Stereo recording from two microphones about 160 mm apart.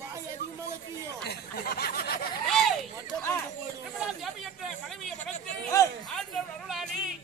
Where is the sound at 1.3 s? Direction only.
75° left (ahead or behind).